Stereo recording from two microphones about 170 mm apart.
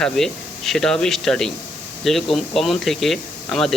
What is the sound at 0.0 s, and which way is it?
Speech, centre (ahead or behind).